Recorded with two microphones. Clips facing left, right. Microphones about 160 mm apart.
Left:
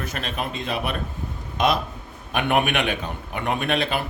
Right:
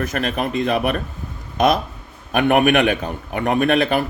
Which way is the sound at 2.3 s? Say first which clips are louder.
Right 7 dB; 45° right (ahead or behind).